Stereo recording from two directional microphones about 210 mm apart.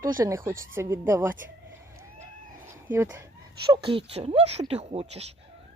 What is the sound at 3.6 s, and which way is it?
Speech, 25° right (ahead or behind).